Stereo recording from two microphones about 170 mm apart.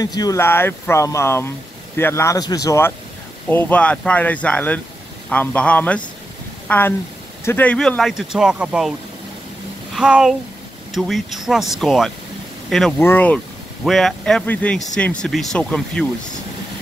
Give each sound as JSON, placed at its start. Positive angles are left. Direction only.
{"t": 0.0, "sound": "speech", "side_deg": 20}
{"t": 9.9, "sound": "speech", "side_deg": -5}